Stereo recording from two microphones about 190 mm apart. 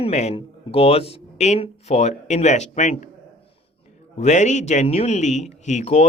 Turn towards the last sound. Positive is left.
turn(degrees=35)  # may be behind; listen again after turning